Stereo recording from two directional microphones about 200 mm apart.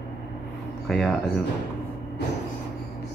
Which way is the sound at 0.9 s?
Centre (ahead or behind).